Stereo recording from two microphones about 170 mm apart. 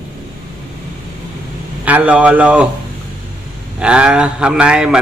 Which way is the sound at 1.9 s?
10° right (ahead or behind).